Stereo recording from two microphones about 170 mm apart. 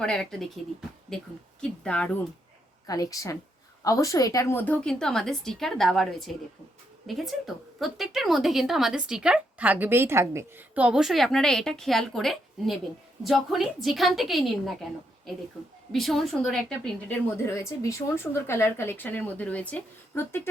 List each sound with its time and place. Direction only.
0.0 s a woman's voice: 5° left (ahead or behind)
1.8 s a woman's voice: 5° left (ahead or behind)
2.8 s a woman's voice: 20° left (ahead or behind); by 14.8 s centre (ahead or behind)
15.9 s speech: centre (ahead or behind)